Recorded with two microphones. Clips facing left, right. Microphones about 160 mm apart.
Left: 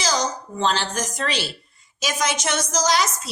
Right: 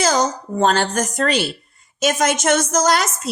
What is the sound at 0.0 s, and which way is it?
A woman's voice, 55° right (ahead or behind).